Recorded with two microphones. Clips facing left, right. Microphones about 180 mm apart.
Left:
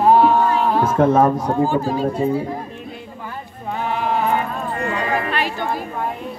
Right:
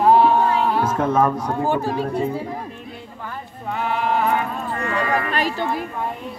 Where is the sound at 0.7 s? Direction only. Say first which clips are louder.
Left 4 dB; 30° left (ahead or behind).